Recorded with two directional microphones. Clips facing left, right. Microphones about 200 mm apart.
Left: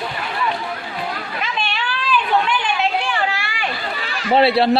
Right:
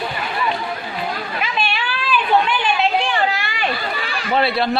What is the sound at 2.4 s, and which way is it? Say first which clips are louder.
Chatter: right 1 dB; 20° right (ahead or behind).